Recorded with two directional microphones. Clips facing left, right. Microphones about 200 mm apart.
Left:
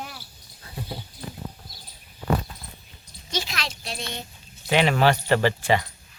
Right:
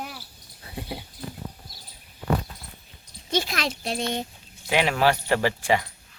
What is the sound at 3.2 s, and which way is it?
Speech, 55° right (ahead or behind).